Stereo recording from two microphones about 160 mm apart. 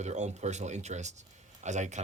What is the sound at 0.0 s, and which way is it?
Speech, 45° right (ahead or behind).